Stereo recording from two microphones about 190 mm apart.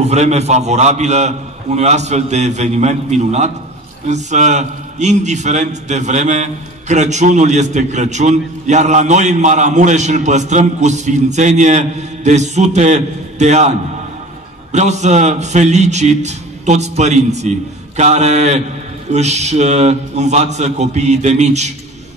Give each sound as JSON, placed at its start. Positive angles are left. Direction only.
{"t": 0.0, "sound": "a man's voice", "side_deg": -35}